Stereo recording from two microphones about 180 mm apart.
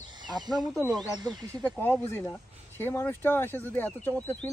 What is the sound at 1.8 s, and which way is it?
Speech, 10° left (ahead or behind).